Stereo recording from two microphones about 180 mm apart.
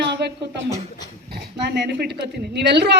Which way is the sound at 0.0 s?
70° right (ahead or behind).